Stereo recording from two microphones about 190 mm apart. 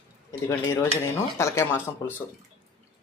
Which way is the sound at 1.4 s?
15° left (ahead or behind).